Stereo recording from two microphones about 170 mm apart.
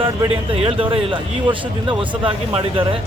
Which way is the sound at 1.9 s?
30° right (ahead or behind).